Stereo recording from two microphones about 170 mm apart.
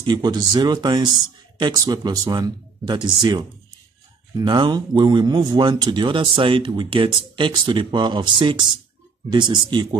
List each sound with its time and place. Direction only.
0.0 s speech: 25° right (ahead or behind)